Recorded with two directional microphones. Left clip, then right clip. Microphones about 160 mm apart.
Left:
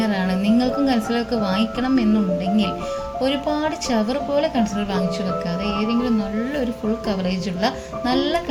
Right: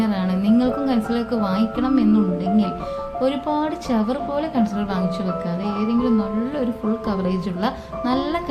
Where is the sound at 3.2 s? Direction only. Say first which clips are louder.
Even; 40° left (ahead or behind).